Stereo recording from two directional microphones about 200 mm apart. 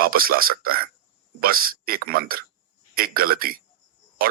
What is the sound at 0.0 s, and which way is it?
Speech, 45° right (ahead or behind).